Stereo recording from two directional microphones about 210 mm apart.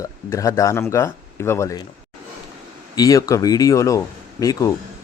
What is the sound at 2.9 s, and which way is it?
Speech, 15° left (ahead or behind).